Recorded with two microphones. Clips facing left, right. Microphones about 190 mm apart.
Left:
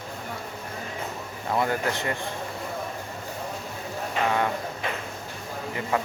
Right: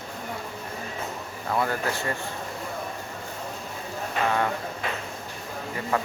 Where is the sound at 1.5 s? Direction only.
20° left (ahead or behind).